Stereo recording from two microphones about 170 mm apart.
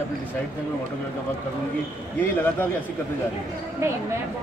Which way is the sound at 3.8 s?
15° right (ahead or behind).